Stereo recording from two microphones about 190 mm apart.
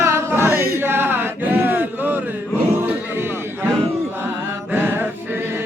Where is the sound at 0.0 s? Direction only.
15° right (ahead or behind).